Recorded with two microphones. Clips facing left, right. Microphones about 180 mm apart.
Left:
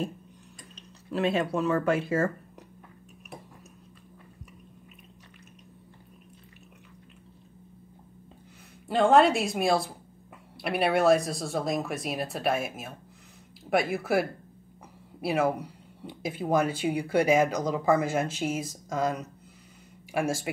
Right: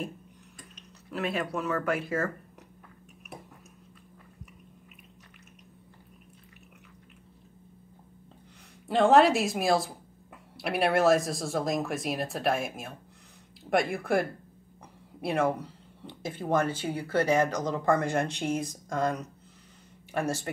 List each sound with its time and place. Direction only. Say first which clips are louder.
1.1 s speech: left 5 dB; 25° left (ahead or behind)
8.8 s speech: even; centre (ahead or behind)